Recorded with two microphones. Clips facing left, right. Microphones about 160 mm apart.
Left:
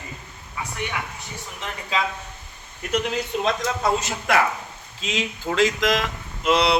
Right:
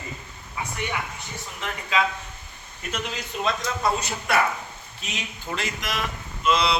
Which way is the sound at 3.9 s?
90° left.